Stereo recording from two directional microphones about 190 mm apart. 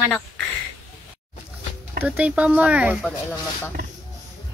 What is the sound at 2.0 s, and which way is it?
Speech, 5° right (ahead or behind).